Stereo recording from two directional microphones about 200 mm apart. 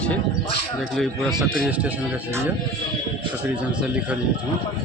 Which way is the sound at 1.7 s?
5° right (ahead or behind).